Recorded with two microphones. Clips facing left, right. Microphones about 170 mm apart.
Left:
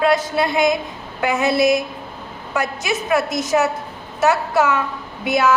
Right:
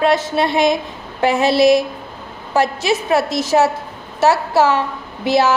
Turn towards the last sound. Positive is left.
turn(degrees=-30)  # may be behind; listen again after turning